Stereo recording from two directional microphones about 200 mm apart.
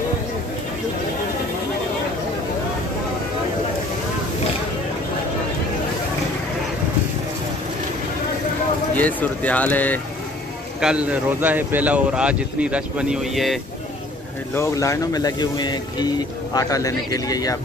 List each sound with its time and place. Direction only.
8.9 s speech: 10° left (ahead or behind)
10.8 s speech: 5° right (ahead or behind)
14.5 s speech: 15° left (ahead or behind)